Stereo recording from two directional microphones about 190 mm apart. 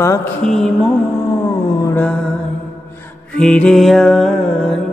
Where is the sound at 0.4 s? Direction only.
Centre (ahead or behind).